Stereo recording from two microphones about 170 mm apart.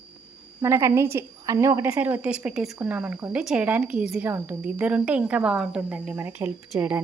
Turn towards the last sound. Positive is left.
turn(degrees=-10)  # may be behind; listen again after turning